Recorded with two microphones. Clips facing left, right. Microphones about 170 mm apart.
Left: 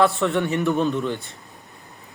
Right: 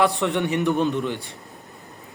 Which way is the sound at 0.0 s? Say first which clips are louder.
Left 1 dB; 15° right (ahead or behind).